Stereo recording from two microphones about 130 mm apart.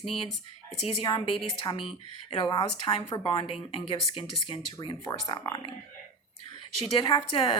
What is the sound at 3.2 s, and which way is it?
Speech, 45° left (ahead or behind).